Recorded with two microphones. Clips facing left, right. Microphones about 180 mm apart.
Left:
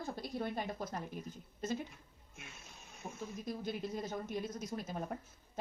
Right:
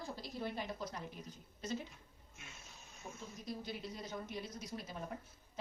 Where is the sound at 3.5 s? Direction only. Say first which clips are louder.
Left 4 dB; 50° left (ahead or behind).